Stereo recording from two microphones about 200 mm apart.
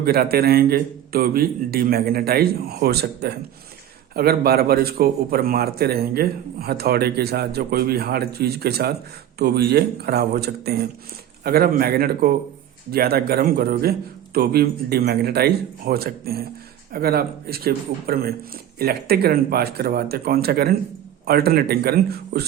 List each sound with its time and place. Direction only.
0.0 s a man's voice: 50° right (ahead or behind)